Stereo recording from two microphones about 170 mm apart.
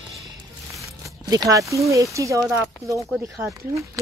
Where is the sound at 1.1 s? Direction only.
20° right (ahead or behind).